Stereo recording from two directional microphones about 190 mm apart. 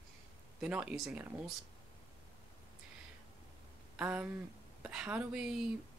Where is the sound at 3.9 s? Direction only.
10° right (ahead or behind).